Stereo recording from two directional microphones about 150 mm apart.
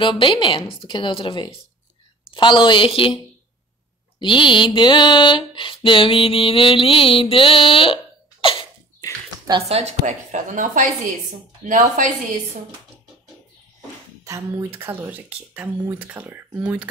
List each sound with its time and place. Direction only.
0.0 s mantra: 35° left (ahead or behind)
4.2 s mantra: 35° left (ahead or behind)
9.7 s speech: 45° right (ahead or behind)
14.2 s speech: 20° right (ahead or behind)